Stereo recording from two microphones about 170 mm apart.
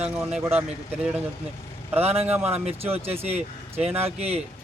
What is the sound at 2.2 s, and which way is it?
Speech, 10° right (ahead or behind).